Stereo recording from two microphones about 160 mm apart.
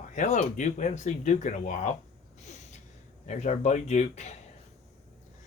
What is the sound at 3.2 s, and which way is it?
Speech, 45° left (ahead or behind).